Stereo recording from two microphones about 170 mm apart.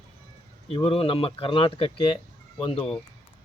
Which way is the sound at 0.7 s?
30° left (ahead or behind).